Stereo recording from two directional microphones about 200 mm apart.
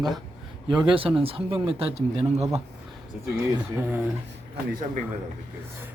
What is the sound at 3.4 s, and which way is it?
Speech, 10° right (ahead or behind).